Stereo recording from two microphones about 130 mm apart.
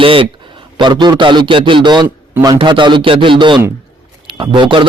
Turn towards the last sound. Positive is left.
turn(degrees=-40)  # may be behind; listen again after turning